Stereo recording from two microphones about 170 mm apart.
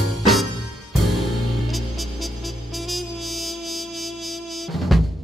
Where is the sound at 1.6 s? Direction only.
Centre (ahead or behind).